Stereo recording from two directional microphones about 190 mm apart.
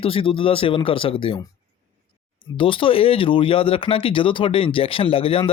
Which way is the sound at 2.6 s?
25° left (ahead or behind).